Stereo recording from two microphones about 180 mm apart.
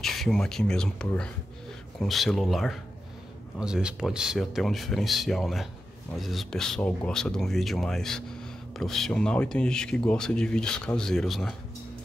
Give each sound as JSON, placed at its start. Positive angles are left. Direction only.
{"t": 0.0, "sound": "speech", "side_deg": 0}